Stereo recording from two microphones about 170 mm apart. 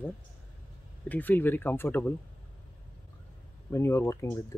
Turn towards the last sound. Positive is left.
turn(degrees=15)  # may be behind; listen again after turning